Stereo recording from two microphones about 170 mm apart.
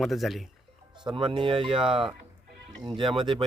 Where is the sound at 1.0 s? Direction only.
30° right (ahead or behind).